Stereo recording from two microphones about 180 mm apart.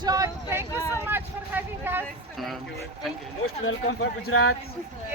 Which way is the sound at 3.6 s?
90° left.